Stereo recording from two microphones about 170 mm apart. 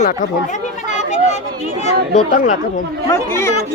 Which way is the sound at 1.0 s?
45° left (ahead or behind).